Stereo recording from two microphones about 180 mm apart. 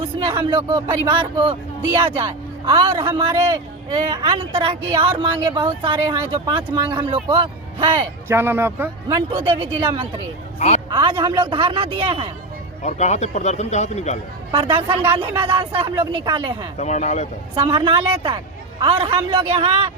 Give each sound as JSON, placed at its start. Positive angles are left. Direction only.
{"t": 0.0, "sound": "speech", "side_deg": -30}
{"t": 8.3, "sound": "speech", "side_deg": -15}
{"t": 9.3, "sound": "speech", "side_deg": -25}
{"t": 12.8, "sound": "a man's voice", "side_deg": 40}
{"t": 15.7, "sound": "speech", "side_deg": -30}
{"t": 16.7, "sound": "a man's voice", "side_deg": 40}
{"t": 17.5, "sound": "a man's voice", "side_deg": -30}